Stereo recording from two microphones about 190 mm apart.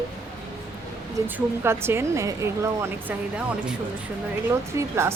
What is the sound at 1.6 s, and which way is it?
Speech, 10° right (ahead or behind).